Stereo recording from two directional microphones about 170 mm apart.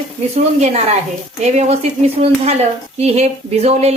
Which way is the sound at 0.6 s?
40° right (ahead or behind).